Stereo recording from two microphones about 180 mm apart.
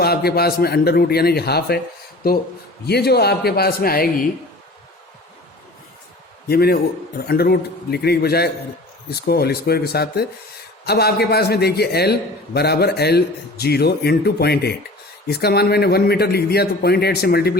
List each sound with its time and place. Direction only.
0.0 s a man's voice: 60° left (ahead or behind)
2.8 s a man's voice: 65° left (ahead or behind)
6.5 s a man's voice: 60° left (ahead or behind)